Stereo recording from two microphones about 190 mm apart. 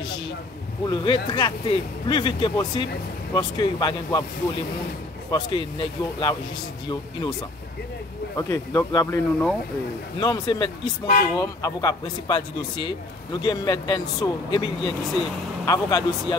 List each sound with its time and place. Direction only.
0.8 s a man's voice: 25° left (ahead or behind)
5.3 s a man's voice: 25° left (ahead or behind)
8.4 s a man's voice: 15° left (ahead or behind)